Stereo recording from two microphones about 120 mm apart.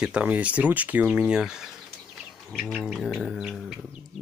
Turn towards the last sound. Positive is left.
turn(degrees=0)  # may be behind; listen again after turning